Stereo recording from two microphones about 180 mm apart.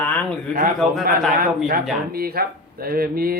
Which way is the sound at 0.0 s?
5° left (ahead or behind).